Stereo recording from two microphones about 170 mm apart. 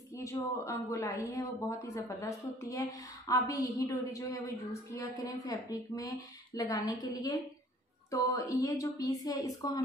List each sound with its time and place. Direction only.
0.1 s speech: 15° left (ahead or behind)